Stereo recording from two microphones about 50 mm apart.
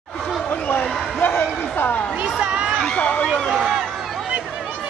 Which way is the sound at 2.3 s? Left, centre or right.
Centre.